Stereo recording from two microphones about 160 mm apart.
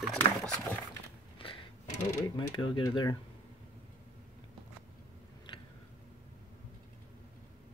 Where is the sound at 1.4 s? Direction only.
35° left (ahead or behind).